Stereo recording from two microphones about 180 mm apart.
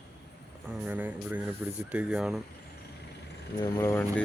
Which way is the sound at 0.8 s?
10° right (ahead or behind).